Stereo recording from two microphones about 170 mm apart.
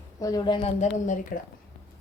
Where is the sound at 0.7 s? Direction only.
45° left (ahead or behind).